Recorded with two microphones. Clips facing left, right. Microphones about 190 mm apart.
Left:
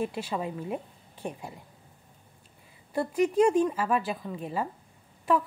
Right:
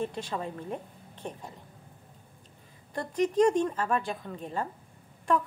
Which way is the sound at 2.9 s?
10° left (ahead or behind).